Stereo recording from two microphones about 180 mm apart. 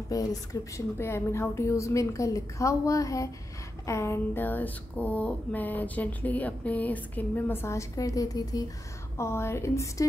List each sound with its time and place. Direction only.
0.1 s speech: 20° left (ahead or behind)